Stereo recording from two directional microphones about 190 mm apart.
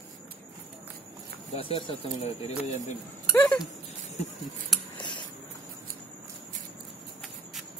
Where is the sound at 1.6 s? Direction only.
30° left (ahead or behind).